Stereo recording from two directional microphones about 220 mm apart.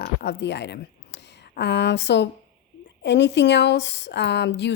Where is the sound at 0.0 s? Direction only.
50° left (ahead or behind).